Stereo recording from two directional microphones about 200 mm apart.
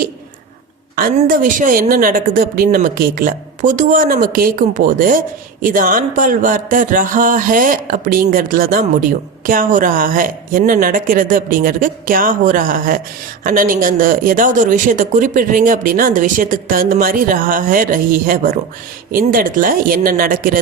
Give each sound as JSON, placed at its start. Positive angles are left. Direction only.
{"t": 0.9, "sound": "speech", "side_deg": -45}